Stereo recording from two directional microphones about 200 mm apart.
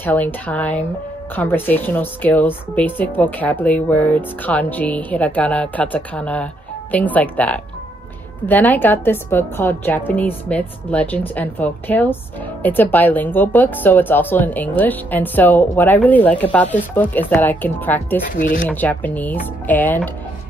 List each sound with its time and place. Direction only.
0.0 s speech: 10° left (ahead or behind)
18.3 s speech: 40° left (ahead or behind)
18.7 s speech: 10° left (ahead or behind)